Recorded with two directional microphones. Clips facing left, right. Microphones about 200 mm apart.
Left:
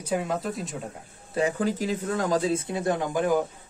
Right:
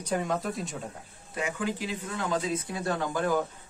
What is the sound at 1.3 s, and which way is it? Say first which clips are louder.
Speech: left 6 dB; 35° left (ahead or behind).